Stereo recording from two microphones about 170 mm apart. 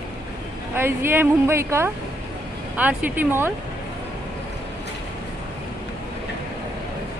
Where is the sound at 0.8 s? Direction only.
15° right (ahead or behind).